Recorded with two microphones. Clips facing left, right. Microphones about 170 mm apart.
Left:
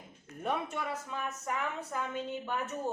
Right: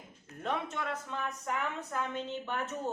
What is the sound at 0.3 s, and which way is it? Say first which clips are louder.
A woman's voice: left 1 dB; 10° left (ahead or behind).